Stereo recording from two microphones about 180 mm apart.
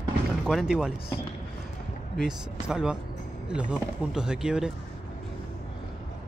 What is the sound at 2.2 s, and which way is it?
Speech, 5° right (ahead or behind).